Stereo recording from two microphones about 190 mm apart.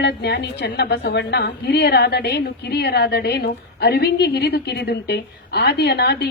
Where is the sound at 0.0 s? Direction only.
65° left (ahead or behind).